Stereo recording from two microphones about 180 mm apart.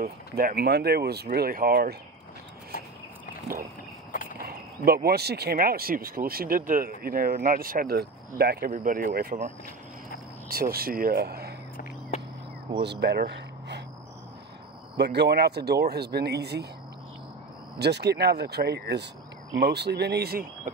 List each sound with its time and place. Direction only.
0.0 s speech: 55° right (ahead or behind)
4.5 s speech: 60° right (ahead or behind)
10.5 s speech: 55° right (ahead or behind)
12.8 s speech: 65° right (ahead or behind)
15.0 s speech: 70° right (ahead or behind)
17.7 s speech: 65° right (ahead or behind)